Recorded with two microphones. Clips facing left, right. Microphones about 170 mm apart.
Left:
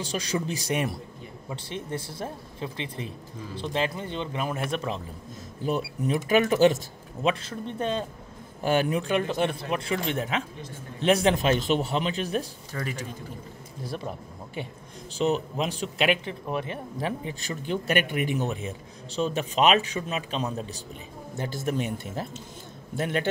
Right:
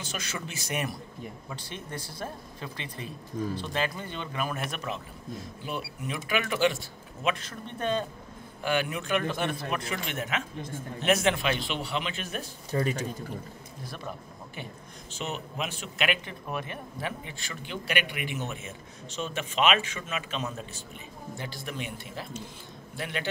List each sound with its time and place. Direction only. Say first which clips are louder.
0.0 s speech: left 8 dB; 35° left (ahead or behind)
5.9 s speech: left 9 dB; 40° left (ahead or behind)
7.2 s speech: left 4 dB; 30° left (ahead or behind)
8.6 s speech: left 5 dB; 40° left (ahead or behind)
12.7 s speech: right 5 dB; 25° right (ahead or behind)
13.8 s speech: left 6 dB; 30° left (ahead or behind); by 23.2 s 45° left (ahead or behind)